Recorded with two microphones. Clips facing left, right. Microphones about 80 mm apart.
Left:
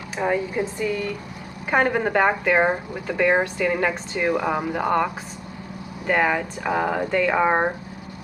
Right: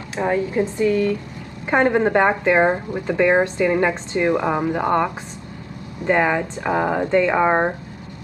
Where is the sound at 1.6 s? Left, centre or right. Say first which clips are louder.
Right 4 dB; centre.